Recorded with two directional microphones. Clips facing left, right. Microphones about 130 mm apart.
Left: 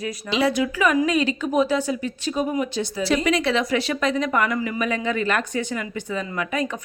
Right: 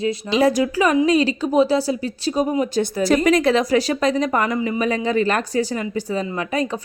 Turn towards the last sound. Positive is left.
turn(degrees=-35)  # may be behind; listen again after turning